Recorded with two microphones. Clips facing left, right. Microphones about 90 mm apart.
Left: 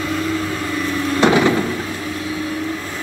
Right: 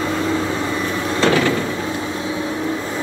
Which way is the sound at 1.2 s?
20° left (ahead or behind).